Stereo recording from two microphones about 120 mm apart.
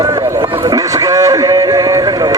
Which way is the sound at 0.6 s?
30° right (ahead or behind).